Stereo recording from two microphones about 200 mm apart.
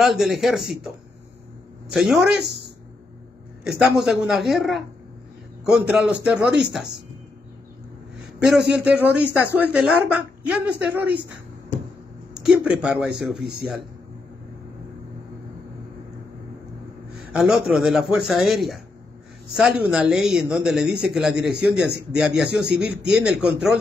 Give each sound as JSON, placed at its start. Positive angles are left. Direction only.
{"t": 0.0, "sound": "a man's voice", "side_deg": 0}
{"t": 2.4, "sound": "speech", "side_deg": -55}
{"t": 3.6, "sound": "a man's voice", "side_deg": -5}
{"t": 8.5, "sound": "a man's voice", "side_deg": -5}
{"t": 12.4, "sound": "a man's voice", "side_deg": -5}
{"t": 17.3, "sound": "a man's voice", "side_deg": 0}